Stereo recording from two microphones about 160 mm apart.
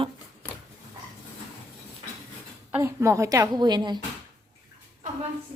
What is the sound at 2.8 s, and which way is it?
Speech, 15° right (ahead or behind).